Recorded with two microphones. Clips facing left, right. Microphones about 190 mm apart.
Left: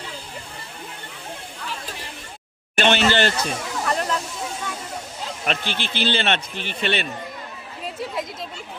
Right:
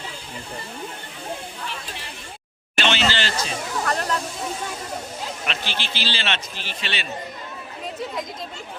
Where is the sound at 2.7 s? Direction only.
55° left (ahead or behind).